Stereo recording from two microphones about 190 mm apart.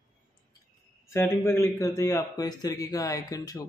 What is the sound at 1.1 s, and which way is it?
A man's voice, 10° left (ahead or behind).